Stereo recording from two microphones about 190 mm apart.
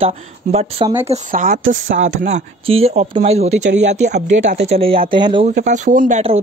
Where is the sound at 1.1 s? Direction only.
45° right (ahead or behind); by 5.4 s 25° right (ahead or behind).